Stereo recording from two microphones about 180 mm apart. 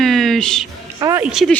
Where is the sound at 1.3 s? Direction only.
Centre (ahead or behind).